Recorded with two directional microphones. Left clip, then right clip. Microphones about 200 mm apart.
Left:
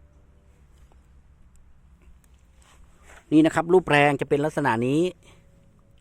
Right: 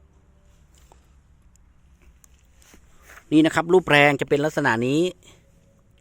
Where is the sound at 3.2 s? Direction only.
Centre (ahead or behind).